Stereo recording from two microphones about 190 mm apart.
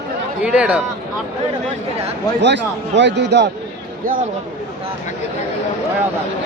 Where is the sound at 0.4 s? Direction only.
5° right (ahead or behind).